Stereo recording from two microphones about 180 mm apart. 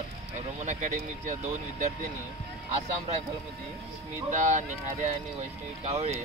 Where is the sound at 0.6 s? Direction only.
45° right (ahead or behind).